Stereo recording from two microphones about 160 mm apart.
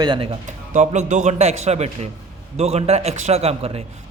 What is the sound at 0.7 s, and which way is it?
A man's voice, 50° right (ahead or behind).